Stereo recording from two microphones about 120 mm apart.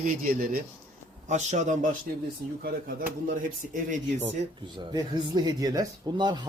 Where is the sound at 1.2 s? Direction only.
80° right.